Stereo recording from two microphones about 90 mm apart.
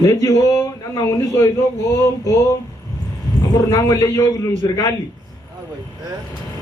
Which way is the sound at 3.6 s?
35° left (ahead or behind).